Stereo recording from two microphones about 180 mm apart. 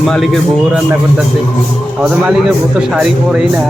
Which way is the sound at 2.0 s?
5° right (ahead or behind).